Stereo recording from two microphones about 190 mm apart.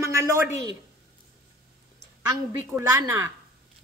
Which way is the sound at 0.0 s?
15° right (ahead or behind).